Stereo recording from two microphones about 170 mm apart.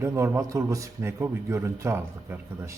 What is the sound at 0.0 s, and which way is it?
A man's voice, 15° right (ahead or behind).